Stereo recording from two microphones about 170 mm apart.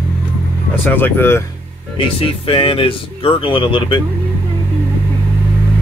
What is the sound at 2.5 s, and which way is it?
Speech, 35° left (ahead or behind).